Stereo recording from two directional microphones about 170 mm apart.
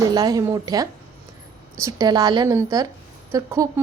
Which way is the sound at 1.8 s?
20° right (ahead or behind).